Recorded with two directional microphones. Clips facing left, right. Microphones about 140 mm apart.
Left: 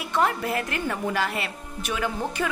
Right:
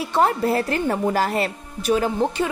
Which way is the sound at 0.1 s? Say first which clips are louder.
Right 5 dB; 35° right (ahead or behind).